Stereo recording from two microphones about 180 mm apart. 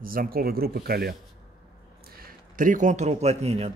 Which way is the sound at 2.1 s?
50° right (ahead or behind).